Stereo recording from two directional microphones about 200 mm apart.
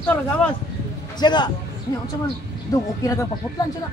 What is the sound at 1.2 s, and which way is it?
Speech, 20° left (ahead or behind).